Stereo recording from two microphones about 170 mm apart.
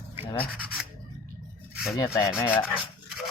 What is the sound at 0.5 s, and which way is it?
Rub, 5° right (ahead or behind).